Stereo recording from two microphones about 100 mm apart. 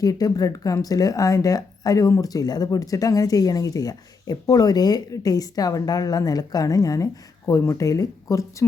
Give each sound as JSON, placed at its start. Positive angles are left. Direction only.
{"t": 0.0, "sound": "speech", "side_deg": 40}